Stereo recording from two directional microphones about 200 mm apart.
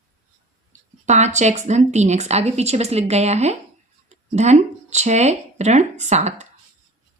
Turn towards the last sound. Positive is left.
turn(degrees=-35)  # may be behind; listen again after turning